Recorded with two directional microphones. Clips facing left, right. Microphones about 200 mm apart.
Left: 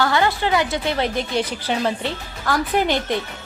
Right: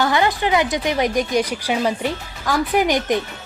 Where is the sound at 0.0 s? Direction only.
20° right (ahead or behind).